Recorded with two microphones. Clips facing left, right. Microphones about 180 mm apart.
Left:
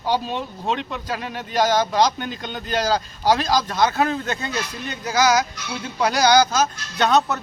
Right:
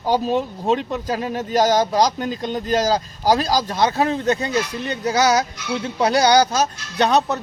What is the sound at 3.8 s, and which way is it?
Speech, 20° right (ahead or behind).